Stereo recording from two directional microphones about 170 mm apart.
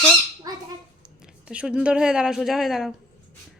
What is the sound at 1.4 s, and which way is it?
Speech, 5° right (ahead or behind).